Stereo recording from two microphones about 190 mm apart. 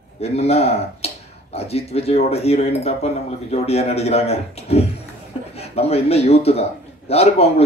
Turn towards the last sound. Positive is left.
turn(degrees=35)  # may be behind; listen again after turning